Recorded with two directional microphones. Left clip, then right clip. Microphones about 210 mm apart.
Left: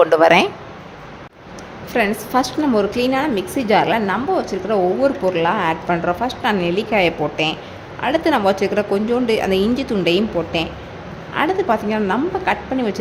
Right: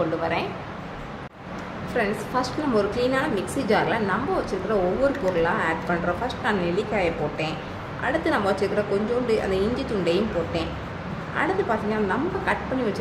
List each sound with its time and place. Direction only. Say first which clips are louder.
0.2 s speech: left 14 dB; 55° left (ahead or behind)
2.0 s a woman's voice: left 7 dB; 30° left (ahead or behind)